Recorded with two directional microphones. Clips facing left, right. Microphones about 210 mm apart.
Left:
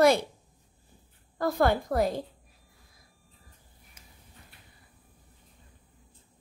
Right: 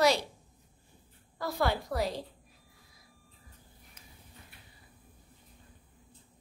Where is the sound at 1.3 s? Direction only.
50° left (ahead or behind).